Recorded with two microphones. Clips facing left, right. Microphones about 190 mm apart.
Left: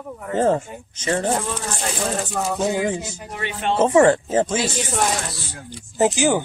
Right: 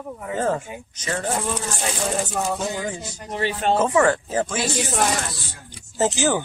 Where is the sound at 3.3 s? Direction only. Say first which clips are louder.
Right 3 dB; 35° right (ahead or behind).